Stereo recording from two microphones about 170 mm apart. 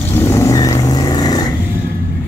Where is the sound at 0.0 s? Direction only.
15° left (ahead or behind).